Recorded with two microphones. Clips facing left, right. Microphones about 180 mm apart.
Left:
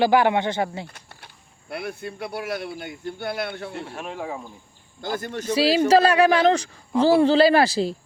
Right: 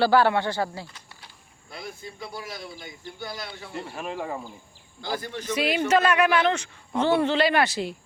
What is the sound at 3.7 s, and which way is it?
Speech, centre (ahead or behind).